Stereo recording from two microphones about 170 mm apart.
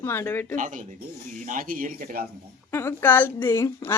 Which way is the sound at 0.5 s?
50° right (ahead or behind).